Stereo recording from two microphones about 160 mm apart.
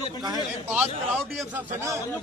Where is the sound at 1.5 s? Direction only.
15° right (ahead or behind).